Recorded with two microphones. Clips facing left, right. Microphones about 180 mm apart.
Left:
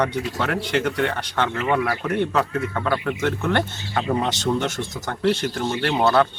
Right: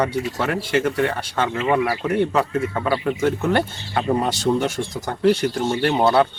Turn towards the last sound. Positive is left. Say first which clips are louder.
# right 2 dB
turn(degrees=-10)  # may be behind; listen again after turning